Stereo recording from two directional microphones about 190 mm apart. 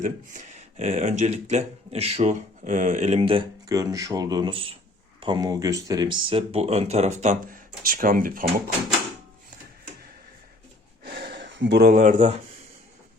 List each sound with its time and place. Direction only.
0.0 s speech: 40° right (ahead or behind)
11.0 s gasp: 55° right (ahead or behind)